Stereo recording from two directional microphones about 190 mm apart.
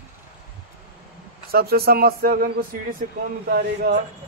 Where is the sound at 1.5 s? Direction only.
55° right (ahead or behind).